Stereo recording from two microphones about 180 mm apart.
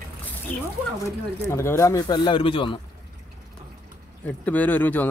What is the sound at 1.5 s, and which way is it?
Speech, 15° left (ahead or behind).